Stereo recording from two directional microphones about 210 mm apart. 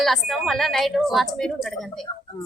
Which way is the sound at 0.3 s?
Centre (ahead or behind).